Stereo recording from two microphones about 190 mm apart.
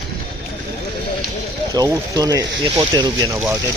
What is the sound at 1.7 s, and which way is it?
Speech, 20° right (ahead or behind).